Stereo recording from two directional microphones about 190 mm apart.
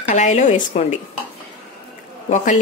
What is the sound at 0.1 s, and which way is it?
Speech, 40° left (ahead or behind).